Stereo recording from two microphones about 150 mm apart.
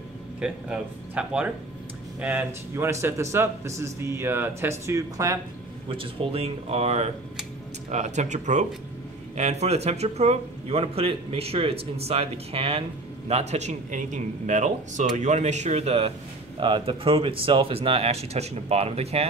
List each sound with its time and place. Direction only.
0.4 s a man's voice: 5° right (ahead or behind); by 5.4 s 25° right (ahead or behind)
5.9 s speech: 40° right (ahead or behind)